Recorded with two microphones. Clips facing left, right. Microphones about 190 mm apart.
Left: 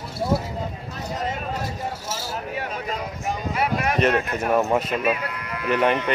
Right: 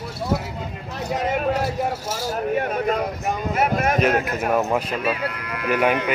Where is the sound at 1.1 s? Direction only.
70° right (ahead or behind).